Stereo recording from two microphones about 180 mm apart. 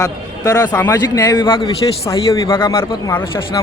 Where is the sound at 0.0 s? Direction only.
20° left (ahead or behind).